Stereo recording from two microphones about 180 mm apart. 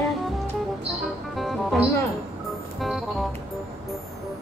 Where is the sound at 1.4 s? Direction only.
Centre (ahead or behind).